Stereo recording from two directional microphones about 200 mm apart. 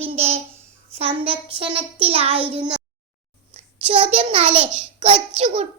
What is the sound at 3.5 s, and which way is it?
A child's voice, 30° right (ahead or behind).